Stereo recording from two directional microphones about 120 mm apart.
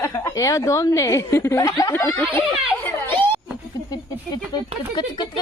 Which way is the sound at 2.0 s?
15° left (ahead or behind).